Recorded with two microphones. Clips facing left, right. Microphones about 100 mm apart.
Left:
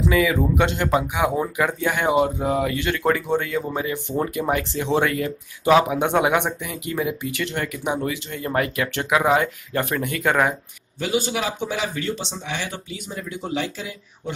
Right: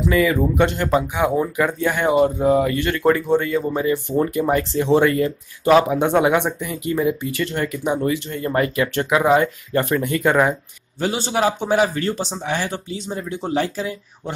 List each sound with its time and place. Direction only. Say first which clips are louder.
0.1 s speech: right 4 dB; 5° left (ahead or behind)
11.0 s speech: right 3 dB; 35° right (ahead or behind)